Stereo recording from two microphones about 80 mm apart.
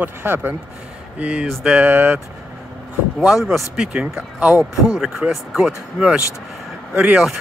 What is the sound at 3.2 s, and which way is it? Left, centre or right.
Speech, centre.